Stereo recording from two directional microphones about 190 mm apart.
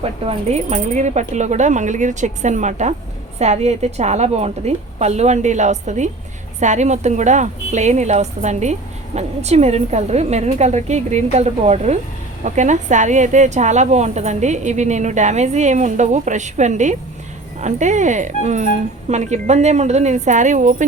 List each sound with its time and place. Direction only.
0.0 s a woman's voice: 30° right (ahead or behind)